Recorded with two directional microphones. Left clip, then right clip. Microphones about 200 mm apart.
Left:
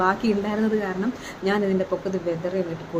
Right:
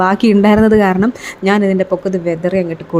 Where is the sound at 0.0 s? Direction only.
45° right (ahead or behind).